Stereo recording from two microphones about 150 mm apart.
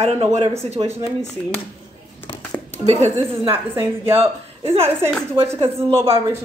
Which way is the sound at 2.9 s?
45° right (ahead or behind).